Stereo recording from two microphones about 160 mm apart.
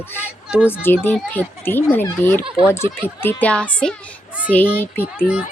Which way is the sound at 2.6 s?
15° left (ahead or behind).